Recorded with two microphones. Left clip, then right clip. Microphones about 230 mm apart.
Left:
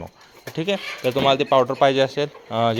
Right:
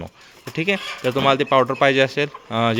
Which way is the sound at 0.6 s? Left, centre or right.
Right.